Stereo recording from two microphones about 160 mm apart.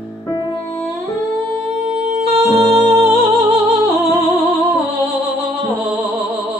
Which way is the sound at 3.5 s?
35° right (ahead or behind).